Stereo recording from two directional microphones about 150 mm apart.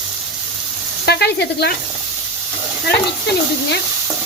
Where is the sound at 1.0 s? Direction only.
90° left.